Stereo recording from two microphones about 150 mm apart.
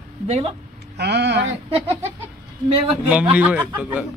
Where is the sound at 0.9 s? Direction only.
90° right.